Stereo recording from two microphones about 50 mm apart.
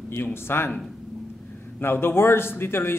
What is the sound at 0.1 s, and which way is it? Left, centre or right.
Speech, left.